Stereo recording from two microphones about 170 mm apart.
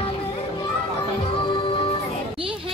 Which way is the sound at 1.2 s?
30° left (ahead or behind).